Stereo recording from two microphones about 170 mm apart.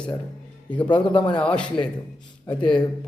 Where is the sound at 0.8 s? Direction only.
30° left (ahead or behind).